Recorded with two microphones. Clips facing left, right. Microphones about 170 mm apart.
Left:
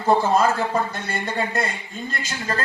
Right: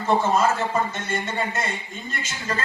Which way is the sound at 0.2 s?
35° left (ahead or behind).